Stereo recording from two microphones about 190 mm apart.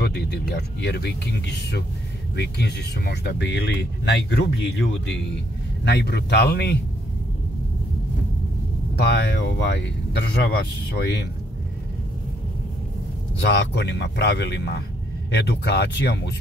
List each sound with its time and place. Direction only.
0.0 s speech: 60° left (ahead or behind)
4.9 s speech: 75° left (ahead or behind)
5.9 s speech: 60° left (ahead or behind)
8.9 s speech: 60° left (ahead or behind)
13.4 s speech: 60° left (ahead or behind)